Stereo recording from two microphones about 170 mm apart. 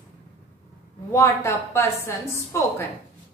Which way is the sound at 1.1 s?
15° left (ahead or behind).